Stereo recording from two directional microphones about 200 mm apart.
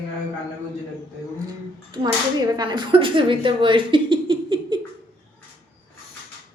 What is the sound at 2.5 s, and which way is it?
Speech, 20° right (ahead or behind).